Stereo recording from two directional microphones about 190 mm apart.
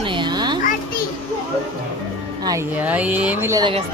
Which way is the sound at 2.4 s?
20° right (ahead or behind).